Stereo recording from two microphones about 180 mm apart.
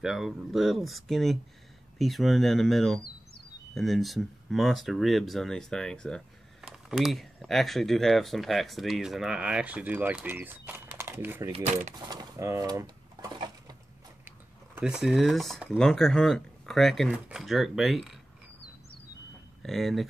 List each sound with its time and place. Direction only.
0.0 s speech: centre (ahead or behind)
11.5 s speech: 40° right (ahead or behind)
12.0 s bird: 20° right (ahead or behind)
14.8 s speech: 5° right (ahead or behind)
19.6 s speech: centre (ahead or behind)